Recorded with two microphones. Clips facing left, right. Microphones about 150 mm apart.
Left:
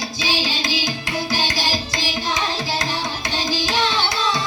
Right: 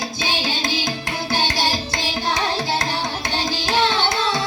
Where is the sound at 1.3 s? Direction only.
60° right (ahead or behind).